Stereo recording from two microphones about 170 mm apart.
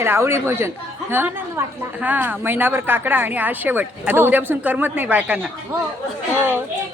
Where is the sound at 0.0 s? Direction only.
15° right (ahead or behind).